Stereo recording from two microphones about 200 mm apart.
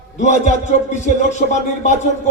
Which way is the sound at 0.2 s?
35° left (ahead or behind).